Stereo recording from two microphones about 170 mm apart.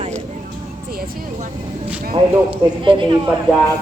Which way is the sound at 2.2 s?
30° right (ahead or behind).